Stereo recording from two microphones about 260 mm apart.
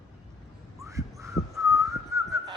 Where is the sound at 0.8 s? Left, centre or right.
Centre.